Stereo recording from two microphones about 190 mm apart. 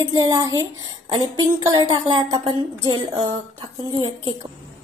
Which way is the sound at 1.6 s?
20° right (ahead or behind).